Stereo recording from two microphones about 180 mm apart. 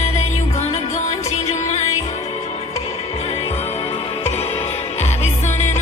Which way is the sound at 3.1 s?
35° left (ahead or behind).